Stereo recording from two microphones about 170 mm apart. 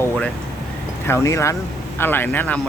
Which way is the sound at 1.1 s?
15° left (ahead or behind).